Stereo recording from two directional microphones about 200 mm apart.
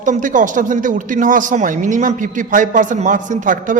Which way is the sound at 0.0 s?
40° right (ahead or behind).